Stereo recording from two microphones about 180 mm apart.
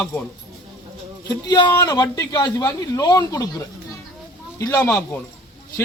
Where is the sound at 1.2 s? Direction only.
25° left (ahead or behind).